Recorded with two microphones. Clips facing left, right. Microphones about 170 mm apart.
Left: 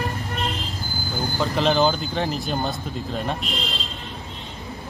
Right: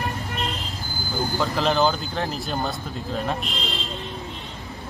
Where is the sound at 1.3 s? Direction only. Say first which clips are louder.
Left 2 dB; centre (ahead or behind).